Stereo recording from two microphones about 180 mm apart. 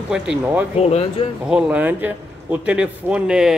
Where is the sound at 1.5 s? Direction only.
5° right (ahead or behind).